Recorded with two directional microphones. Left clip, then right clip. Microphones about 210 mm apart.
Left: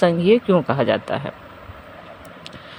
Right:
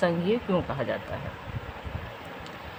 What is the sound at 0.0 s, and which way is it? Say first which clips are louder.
Speech: left 10 dB; 30° left (ahead or behind).